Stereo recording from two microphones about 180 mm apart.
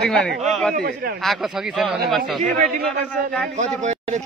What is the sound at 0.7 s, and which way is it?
Speech, 55° right (ahead or behind).